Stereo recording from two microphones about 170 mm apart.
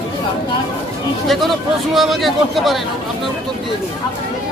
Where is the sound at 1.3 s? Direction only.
Centre (ahead or behind).